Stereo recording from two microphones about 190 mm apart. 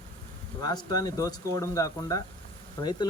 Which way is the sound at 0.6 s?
20° left (ahead or behind).